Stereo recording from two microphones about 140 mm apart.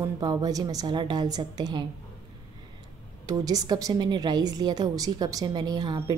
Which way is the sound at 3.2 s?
25° right (ahead or behind).